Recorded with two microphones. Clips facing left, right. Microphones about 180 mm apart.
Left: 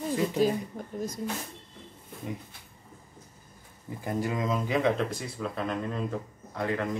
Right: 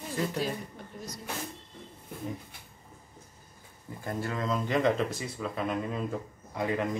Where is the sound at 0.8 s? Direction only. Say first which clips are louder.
Left 7 dB; 45° left (ahead or behind).